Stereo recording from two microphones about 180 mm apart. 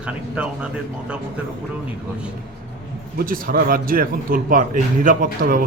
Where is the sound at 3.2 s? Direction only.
55° right (ahead or behind).